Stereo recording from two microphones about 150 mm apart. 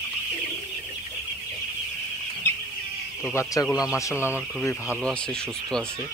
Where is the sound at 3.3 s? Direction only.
20° left (ahead or behind).